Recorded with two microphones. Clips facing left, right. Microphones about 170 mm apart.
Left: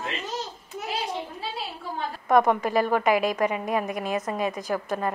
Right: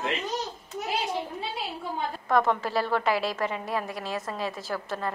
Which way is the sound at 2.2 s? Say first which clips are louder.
Left 4 dB; 15° left (ahead or behind).